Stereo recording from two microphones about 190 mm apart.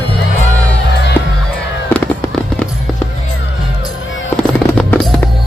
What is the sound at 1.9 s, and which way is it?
Fireworks, 10° left (ahead or behind).